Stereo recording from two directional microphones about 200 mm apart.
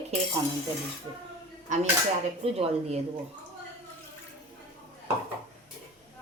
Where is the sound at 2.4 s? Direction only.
30° right (ahead or behind).